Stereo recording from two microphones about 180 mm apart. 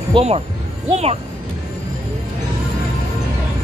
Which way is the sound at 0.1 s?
35° right (ahead or behind).